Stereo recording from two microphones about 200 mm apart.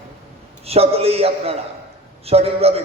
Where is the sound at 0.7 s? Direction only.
30° right (ahead or behind).